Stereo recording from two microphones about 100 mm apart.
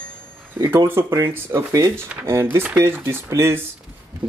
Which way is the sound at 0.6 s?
30° right (ahead or behind).